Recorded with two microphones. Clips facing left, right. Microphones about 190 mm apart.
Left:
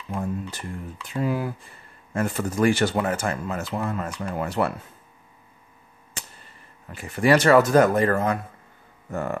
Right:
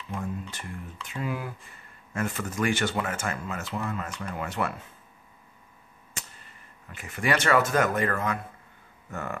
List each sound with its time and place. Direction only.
0.1 s a sound: 35° left (ahead or behind)
1.0 s speech: 35° left (ahead or behind)
6.9 s speech: 35° left (ahead or behind)